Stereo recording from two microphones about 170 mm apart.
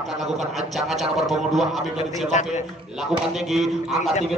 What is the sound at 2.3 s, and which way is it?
Speech, 45° left (ahead or behind).